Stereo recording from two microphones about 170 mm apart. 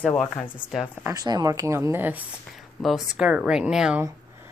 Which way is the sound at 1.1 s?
25° right (ahead or behind).